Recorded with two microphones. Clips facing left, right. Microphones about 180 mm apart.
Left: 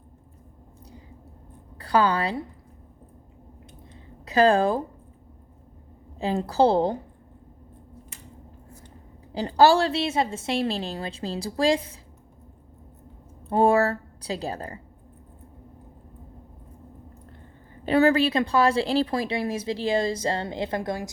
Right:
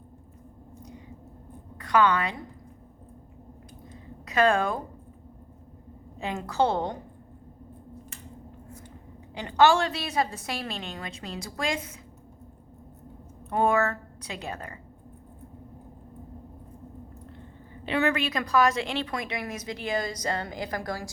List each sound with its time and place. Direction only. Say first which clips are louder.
1.8 s a woman's voice: left 1 dB; 30° left (ahead or behind)
3.9 s a sound: left 4 dB; 30° left (ahead or behind)
6.1 s a woman's voice: left 5 dB; 30° left (ahead or behind)
9.3 s a woman's voice: left 3 dB; 35° left (ahead or behind)
13.5 s a woman's voice: left 4 dB; 30° left (ahead or behind)
17.8 s speech: left 7 dB; 35° left (ahead or behind)